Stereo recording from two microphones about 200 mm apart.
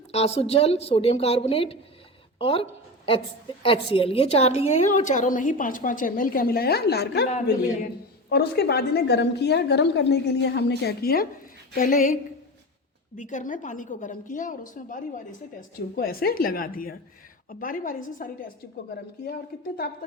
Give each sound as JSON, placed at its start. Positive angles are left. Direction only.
{"t": 0.1, "sound": "a woman's voice", "side_deg": 30}
{"t": 8.3, "sound": "a woman's voice", "side_deg": 50}